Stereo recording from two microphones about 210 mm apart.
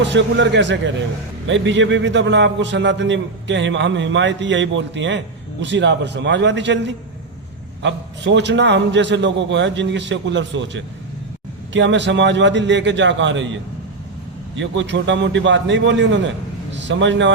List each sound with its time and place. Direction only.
0.0 s a man's voice: 60° right (ahead or behind)
14.5 s a man's voice: 60° right (ahead or behind)